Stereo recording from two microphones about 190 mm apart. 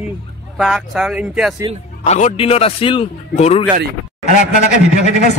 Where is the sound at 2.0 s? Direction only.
35° left (ahead or behind).